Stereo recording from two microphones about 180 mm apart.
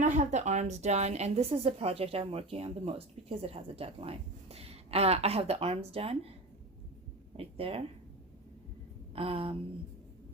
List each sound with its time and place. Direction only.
0.0 s speech: 45° right (ahead or behind)
7.3 s speech: 30° right (ahead or behind)
9.1 s speech: 30° right (ahead or behind)